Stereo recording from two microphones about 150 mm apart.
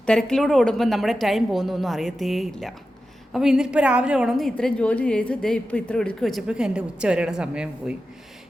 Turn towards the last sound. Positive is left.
turn(degrees=-5)  # may be behind; listen again after turning